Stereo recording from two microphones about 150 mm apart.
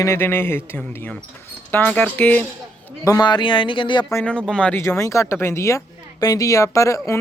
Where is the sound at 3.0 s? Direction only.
25° left (ahead or behind).